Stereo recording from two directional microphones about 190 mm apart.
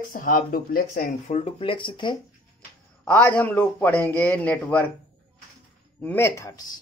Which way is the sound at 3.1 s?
10° left (ahead or behind).